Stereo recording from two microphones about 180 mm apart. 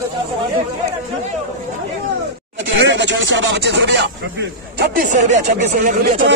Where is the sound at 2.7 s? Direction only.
90° right; by 4.0 s 75° right (ahead or behind).